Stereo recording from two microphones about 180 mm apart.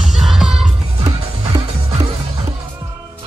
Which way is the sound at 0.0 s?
Centre (ahead or behind).